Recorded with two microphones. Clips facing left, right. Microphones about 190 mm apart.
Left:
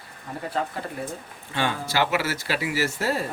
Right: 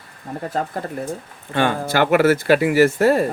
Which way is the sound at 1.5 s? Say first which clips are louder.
Right 7 dB; 55° right (ahead or behind).